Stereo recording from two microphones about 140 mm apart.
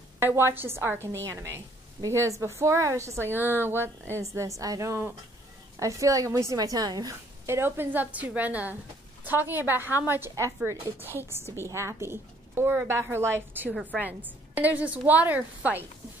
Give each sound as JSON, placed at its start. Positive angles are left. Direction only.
{"t": 0.2, "sound": "a woman's voice", "side_deg": -15}